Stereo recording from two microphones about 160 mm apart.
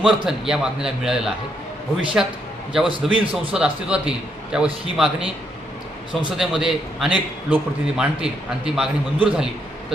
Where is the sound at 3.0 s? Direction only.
Centre (ahead or behind).